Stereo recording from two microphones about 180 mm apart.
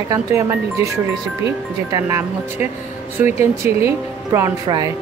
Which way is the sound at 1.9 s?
15° right (ahead or behind).